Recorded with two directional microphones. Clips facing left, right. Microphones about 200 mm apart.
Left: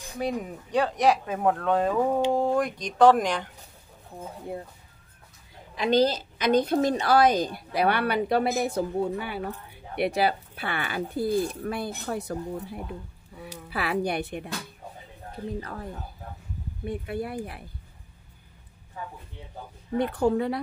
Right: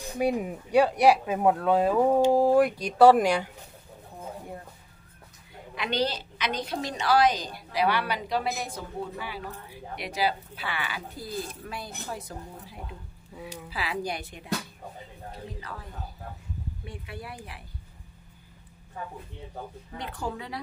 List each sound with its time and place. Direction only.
0.2 s speech: 10° right (ahead or behind)
5.8 s a woman's voice: 45° left (ahead or behind); by 14.5 s 60° left (ahead or behind)
15.6 s a woman's voice: 50° left (ahead or behind)
20.0 s a woman's voice: 60° left (ahead or behind)